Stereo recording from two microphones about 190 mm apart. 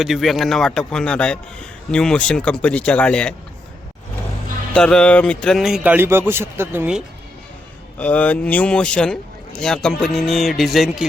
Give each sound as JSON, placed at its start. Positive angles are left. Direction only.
{"t": 0.0, "sound": "a man's voice", "side_deg": 0}
{"t": 4.7, "sound": "a man's voice", "side_deg": 5}
{"t": 7.9, "sound": "a man's voice", "side_deg": 10}